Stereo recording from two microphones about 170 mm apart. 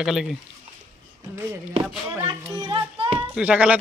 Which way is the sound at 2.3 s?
25° right (ahead or behind).